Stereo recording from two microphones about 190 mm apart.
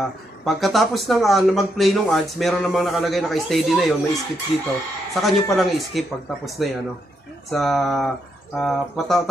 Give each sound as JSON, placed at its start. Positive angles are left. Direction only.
{"t": 0.5, "sound": "speech", "side_deg": 0}